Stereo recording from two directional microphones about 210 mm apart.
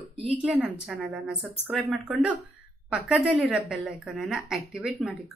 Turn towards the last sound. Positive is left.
turn(degrees=0)  # may be behind; listen again after turning